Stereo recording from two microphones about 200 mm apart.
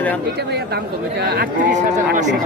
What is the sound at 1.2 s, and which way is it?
Speech, 55° right (ahead or behind).